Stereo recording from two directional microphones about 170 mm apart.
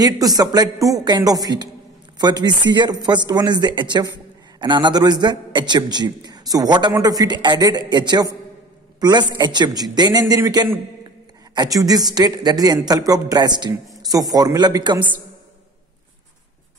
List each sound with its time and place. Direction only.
0.0 s speech: 20° right (ahead or behind)